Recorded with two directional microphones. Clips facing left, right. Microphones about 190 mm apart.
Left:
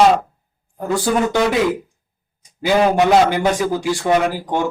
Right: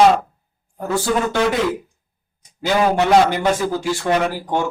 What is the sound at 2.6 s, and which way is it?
A man's voice, 10° left (ahead or behind).